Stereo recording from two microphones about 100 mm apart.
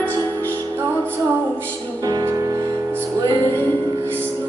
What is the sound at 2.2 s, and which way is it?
Music, 30° right (ahead or behind).